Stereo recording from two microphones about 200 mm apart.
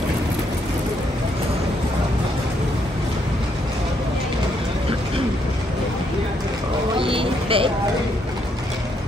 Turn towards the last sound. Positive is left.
turn(degrees=-25)  # may be behind; listen again after turning